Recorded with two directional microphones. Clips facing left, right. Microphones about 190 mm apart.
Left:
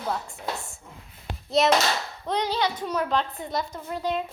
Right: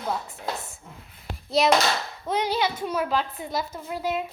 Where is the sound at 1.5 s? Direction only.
Centre (ahead or behind).